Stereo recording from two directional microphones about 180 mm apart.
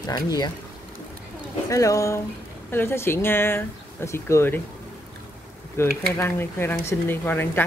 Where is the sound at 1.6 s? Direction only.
15° left (ahead or behind).